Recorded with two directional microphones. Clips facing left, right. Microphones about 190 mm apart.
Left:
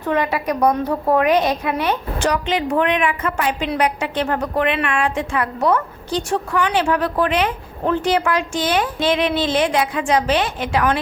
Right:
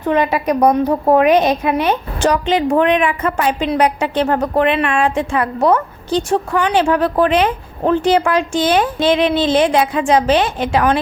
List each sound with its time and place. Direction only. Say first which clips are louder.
0.1 s a woman's voice: right 4 dB; 20° right (ahead or behind)